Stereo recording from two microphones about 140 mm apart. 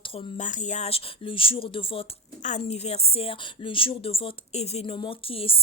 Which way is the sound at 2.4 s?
60° left (ahead or behind).